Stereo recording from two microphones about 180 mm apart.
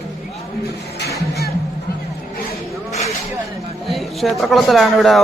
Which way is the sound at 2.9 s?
35° left (ahead or behind).